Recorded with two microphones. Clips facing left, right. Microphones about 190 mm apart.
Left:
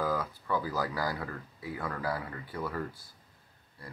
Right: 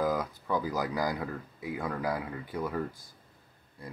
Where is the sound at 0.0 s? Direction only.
15° right (ahead or behind).